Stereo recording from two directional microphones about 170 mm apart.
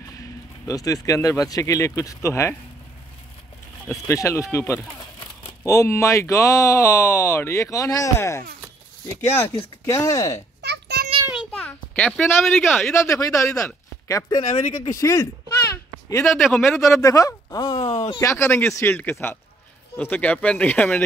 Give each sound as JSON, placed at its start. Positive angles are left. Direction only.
{"t": 0.7, "sound": "speech", "side_deg": 20}
{"t": 3.9, "sound": "speech", "side_deg": 15}
{"t": 10.6, "sound": "a sound", "side_deg": -75}
{"t": 11.5, "sound": "a sound", "side_deg": 10}
{"t": 12.1, "sound": "speech", "side_deg": 5}
{"t": 14.4, "sound": "speech", "side_deg": 45}
{"t": 15.0, "sound": "a sound", "side_deg": 20}
{"t": 16.3, "sound": "speech", "side_deg": 0}
{"t": 16.7, "sound": "speech", "side_deg": 15}